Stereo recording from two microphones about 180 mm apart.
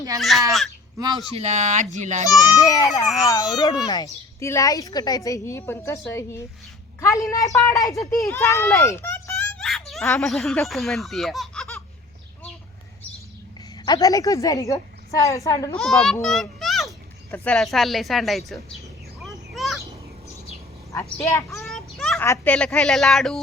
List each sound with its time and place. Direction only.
0.2 s speech: centre (ahead or behind)
0.9 s speech: 20° right (ahead or behind)
1.4 s speech: 40° right (ahead or behind)
2.2 s a child's voice: 20° left (ahead or behind)
9.6 s a sound: centre (ahead or behind)
10.2 s speech: centre (ahead or behind)
13.8 s a child's voice: 20° left (ahead or behind)
15.8 s speech: centre (ahead or behind)
16.2 s children playing: centre (ahead or behind)
17.3 s speech: 5° left (ahead or behind)
19.2 s a sound: centre (ahead or behind)
21.2 s a child's voice: 15° left (ahead or behind)
21.5 s a sound: centre (ahead or behind)
22.2 s speech: 10° left (ahead or behind)